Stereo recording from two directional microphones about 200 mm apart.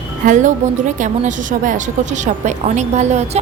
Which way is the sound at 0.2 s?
40° right (ahead or behind).